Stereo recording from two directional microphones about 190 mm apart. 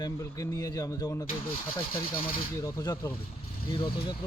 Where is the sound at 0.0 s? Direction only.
20° left (ahead or behind).